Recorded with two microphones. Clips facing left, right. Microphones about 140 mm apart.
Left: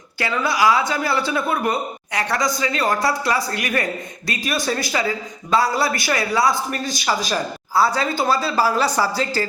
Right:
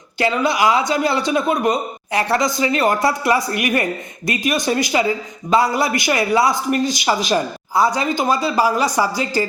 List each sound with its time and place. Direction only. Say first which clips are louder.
0.2 s a man's voice: right 3 dB; 20° right (ahead or behind)